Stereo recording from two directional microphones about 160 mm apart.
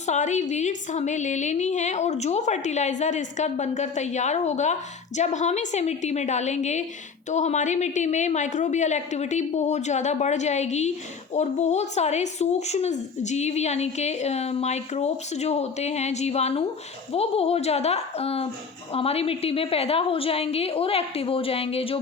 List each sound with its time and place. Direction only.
0.0 s a woman's voice: 45° left (ahead or behind)